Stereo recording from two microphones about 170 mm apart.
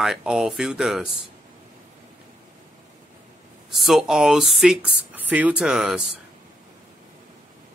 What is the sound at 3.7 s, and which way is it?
Speech, centre (ahead or behind).